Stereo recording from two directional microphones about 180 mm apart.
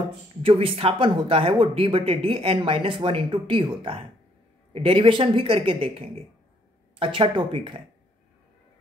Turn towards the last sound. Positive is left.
turn(degrees=-30)  # may be behind; listen again after turning